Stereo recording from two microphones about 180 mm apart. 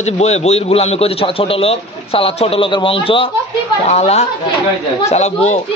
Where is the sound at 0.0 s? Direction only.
40° left (ahead or behind).